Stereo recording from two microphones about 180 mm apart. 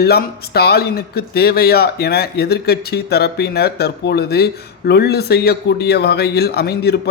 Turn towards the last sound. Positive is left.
turn(degrees=65)  # may be behind; listen again after turning